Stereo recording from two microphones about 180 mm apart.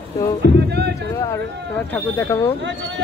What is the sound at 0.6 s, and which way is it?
Speech, 65° right (ahead or behind).